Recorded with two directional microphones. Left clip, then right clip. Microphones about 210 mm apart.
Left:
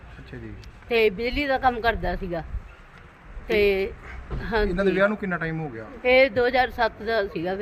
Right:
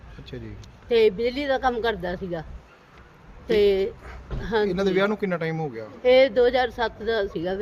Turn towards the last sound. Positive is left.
turn(degrees=-5)  # may be behind; listen again after turning